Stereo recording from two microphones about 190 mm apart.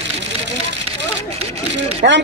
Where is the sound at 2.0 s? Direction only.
55° right (ahead or behind).